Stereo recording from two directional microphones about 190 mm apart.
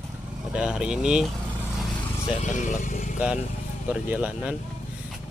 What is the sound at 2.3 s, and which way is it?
Speech, 40° left (ahead or behind).